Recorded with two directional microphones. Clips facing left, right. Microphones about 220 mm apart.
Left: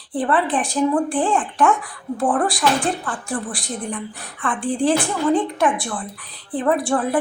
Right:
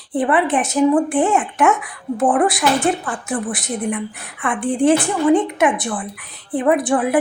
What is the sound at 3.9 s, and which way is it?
Speech, 10° right (ahead or behind).